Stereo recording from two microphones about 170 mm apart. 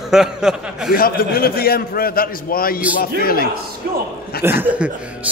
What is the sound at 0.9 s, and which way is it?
A man's voice, 60° left (ahead or behind).